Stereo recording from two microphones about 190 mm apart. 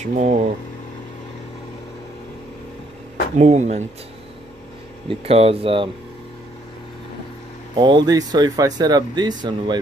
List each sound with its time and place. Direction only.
0.0 s speech: 35° right (ahead or behind)
3.3 s speech: 35° right (ahead or behind)
5.0 s speech: 30° right (ahead or behind)
7.7 s speech: 25° right (ahead or behind)